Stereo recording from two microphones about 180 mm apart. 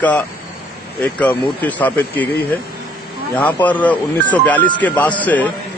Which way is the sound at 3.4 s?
10° left (ahead or behind).